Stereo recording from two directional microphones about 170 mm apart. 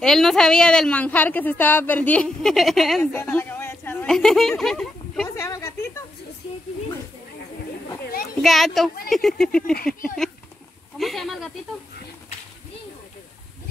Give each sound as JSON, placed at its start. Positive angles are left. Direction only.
{"t": 0.0, "sound": "a woman's voice", "side_deg": 0}
{"t": 5.4, "sound": "speech", "side_deg": 15}
{"t": 8.4, "sound": "a woman's voice", "side_deg": 0}
{"t": 11.0, "sound": "a woman's voice", "side_deg": 0}